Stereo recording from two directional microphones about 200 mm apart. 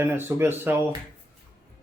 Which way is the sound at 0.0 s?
10° right (ahead or behind).